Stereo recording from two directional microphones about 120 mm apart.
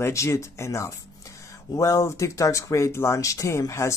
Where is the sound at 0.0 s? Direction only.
25° left (ahead or behind).